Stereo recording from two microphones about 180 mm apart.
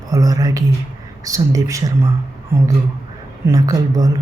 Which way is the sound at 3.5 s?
20° right (ahead or behind).